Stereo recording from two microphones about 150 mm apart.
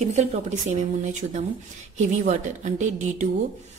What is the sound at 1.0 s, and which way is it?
A woman's voice, 55° right (ahead or behind).